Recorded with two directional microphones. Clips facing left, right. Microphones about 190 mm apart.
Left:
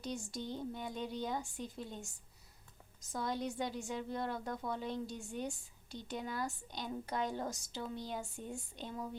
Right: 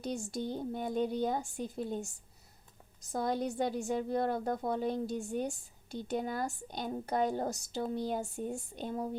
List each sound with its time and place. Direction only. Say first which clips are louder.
0.5 s a woman's voice: right 8 dB; 45° right (ahead or behind)
3.1 s a woman's voice: right 5 dB; 50° right (ahead or behind)